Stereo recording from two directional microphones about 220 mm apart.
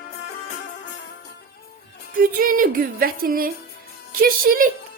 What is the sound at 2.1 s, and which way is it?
A woman's voice, 40° right (ahead or behind).